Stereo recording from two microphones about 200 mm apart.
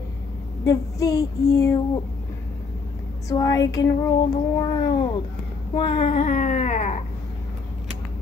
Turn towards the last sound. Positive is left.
turn(degrees=35)  # may be behind; listen again after turning